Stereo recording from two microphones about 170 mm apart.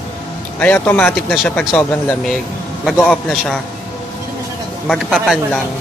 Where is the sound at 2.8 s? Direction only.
5° left (ahead or behind).